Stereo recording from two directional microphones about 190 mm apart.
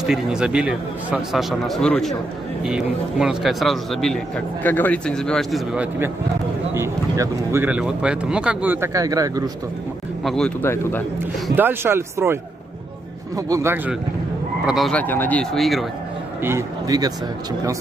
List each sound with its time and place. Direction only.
0.0 s a man's voice: 5° right (ahead or behind); by 9.4 s 20° right (ahead or behind)
10.2 s a man's voice: 5° left (ahead or behind)
11.5 s speech: 10° right (ahead or behind)
13.5 s speech: 15° right (ahead or behind)
14.7 s a man's voice: centre (ahead or behind)
16.4 s a man's voice: 15° right (ahead or behind)